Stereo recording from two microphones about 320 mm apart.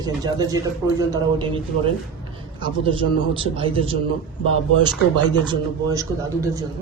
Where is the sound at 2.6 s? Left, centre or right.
Centre.